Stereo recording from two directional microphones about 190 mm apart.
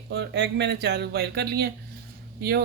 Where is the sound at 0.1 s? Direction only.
60° right (ahead or behind).